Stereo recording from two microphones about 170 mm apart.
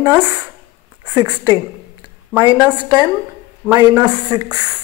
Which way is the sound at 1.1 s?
25° right (ahead or behind).